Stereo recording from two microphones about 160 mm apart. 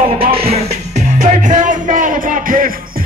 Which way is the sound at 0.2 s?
35° right (ahead or behind).